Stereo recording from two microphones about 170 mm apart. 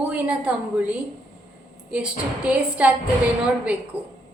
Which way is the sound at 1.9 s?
10° right (ahead or behind).